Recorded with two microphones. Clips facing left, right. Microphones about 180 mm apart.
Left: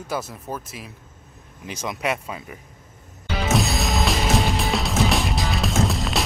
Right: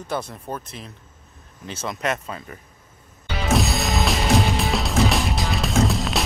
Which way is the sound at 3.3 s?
Centre (ahead or behind).